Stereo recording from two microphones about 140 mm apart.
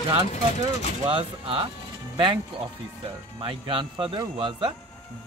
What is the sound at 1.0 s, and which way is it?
Speech, 40° right (ahead or behind).